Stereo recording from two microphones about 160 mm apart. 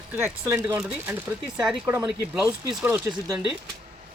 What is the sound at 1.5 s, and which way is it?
Speech, 5° right (ahead or behind).